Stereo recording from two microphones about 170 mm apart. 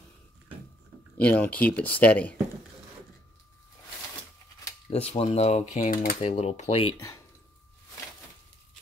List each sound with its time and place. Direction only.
1.1 s speech: 10° left (ahead or behind)
4.8 s speech: 40° left (ahead or behind)
5.9 s speech: 55° left (ahead or behind)
6.2 s speech: 40° left (ahead or behind)